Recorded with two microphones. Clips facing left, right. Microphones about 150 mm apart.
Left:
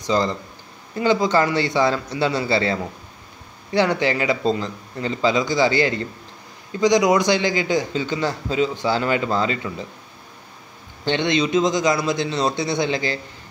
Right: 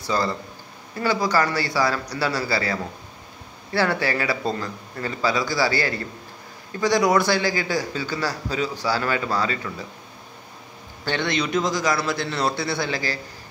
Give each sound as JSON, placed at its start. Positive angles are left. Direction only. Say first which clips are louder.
{"t": 0.0, "sound": "a man's voice", "louder": "left 3 dB", "side_deg": 20}
{"t": 11.1, "sound": "a man's voice", "louder": "left 4 dB", "side_deg": 20}